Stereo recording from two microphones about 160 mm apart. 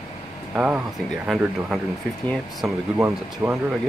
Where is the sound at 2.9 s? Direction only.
15° right (ahead or behind).